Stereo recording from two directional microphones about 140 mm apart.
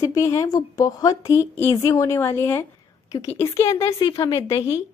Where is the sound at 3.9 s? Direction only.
35° left (ahead or behind).